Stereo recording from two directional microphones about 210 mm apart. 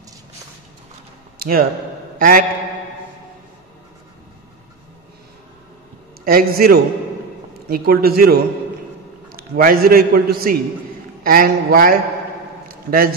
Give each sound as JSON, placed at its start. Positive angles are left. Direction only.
{"t": 1.4, "sound": "speech", "side_deg": -45}
{"t": 2.1, "sound": "mantra", "side_deg": -40}
{"t": 6.2, "sound": "a man's voice", "side_deg": -45}
{"t": 12.6, "sound": "a sound", "side_deg": -45}